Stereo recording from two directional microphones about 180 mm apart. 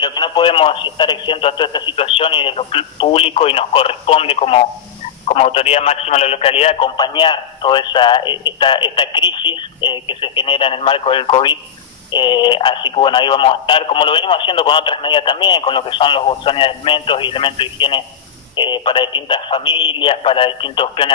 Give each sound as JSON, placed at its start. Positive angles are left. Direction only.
{"t": 0.0, "sound": "speech", "side_deg": 25}